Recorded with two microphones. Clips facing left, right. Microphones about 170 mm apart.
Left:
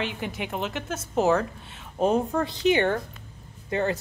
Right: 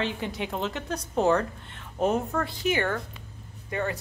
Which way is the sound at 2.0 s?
25° left (ahead or behind).